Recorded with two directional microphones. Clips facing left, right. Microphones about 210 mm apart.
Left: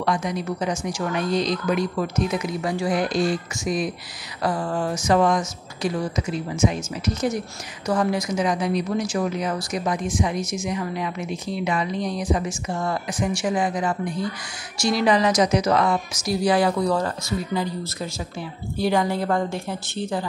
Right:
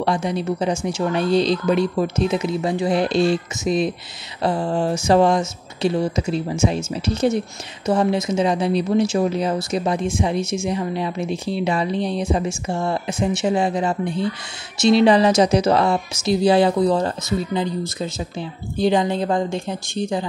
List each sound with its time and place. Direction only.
0.0 s speech: 30° right (ahead or behind)